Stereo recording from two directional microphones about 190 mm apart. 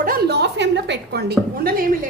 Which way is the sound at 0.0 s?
55° right (ahead or behind).